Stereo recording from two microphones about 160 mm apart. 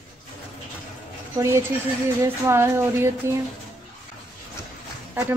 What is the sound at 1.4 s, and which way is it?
A woman's voice, 15° right (ahead or behind).